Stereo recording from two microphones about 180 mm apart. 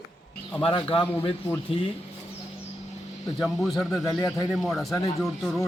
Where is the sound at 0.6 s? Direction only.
25° left (ahead or behind).